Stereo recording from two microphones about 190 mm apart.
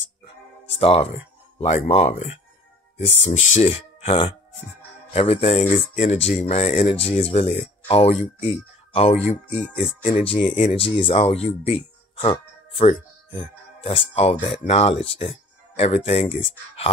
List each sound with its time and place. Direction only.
0.7 s speech: 30° left (ahead or behind)
3.5 s speech: 30° left (ahead or behind)
9.5 s speech: 5° left (ahead or behind)
10.0 s speech: 35° left (ahead or behind)